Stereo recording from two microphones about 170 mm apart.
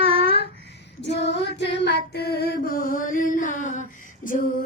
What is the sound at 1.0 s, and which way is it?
Female singing, 90° left.